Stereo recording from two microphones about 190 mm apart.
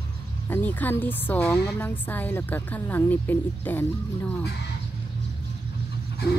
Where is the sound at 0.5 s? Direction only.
10° left (ahead or behind).